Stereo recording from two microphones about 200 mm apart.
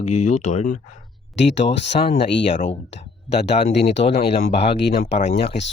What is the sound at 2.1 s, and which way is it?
Speech, 35° left (ahead or behind).